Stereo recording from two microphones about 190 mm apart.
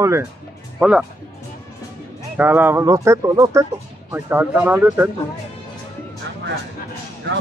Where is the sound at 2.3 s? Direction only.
10° right (ahead or behind).